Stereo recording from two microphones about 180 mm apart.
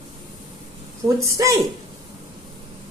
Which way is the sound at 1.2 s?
15° right (ahead or behind).